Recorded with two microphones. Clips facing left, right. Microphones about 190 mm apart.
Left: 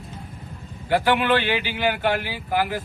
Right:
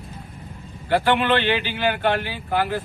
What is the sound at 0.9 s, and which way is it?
A man's voice, 10° left (ahead or behind).